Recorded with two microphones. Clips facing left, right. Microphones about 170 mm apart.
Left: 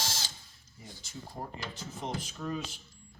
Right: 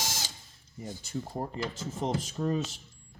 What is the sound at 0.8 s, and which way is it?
Speech, 45° right (ahead or behind).